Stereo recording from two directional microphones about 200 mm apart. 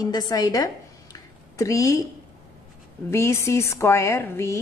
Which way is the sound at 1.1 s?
15° left (ahead or behind).